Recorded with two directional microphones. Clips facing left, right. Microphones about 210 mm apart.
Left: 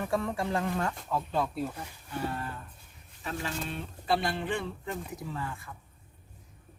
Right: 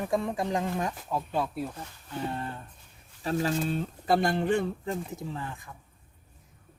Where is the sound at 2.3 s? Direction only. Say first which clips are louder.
Right 2 dB; 25° right (ahead or behind).